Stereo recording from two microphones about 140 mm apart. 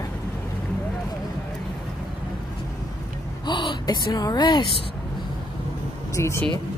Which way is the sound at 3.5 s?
30° left (ahead or behind).